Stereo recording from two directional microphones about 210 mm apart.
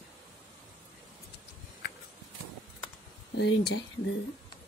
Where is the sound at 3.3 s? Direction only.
50° left (ahead or behind).